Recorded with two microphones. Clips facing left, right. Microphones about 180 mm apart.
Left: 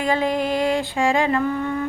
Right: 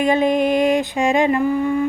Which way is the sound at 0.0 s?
20° right (ahead or behind).